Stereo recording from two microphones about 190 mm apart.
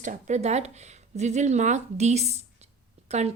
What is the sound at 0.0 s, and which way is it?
A woman's voice, 40° right (ahead or behind).